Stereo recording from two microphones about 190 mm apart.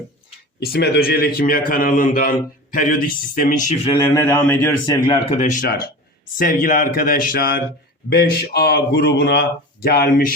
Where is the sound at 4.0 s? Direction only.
15° left (ahead or behind).